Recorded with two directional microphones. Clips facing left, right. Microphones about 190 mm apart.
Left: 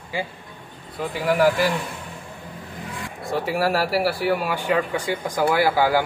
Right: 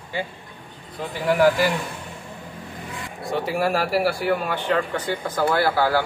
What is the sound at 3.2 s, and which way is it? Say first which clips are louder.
A man's voice: even; centre (ahead or behind).